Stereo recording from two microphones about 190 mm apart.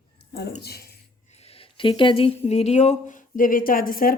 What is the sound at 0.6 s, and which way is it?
Speech, 55° left (ahead or behind).